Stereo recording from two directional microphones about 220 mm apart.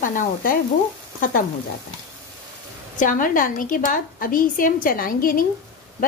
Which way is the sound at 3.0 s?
40° left (ahead or behind).